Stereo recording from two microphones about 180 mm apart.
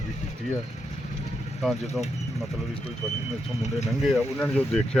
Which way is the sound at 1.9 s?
40° left (ahead or behind).